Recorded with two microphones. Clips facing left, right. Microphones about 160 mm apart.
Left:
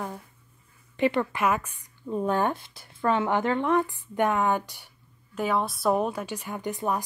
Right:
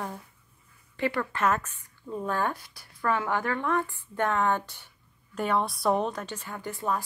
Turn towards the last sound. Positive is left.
turn(degrees=20)  # may be behind; listen again after turning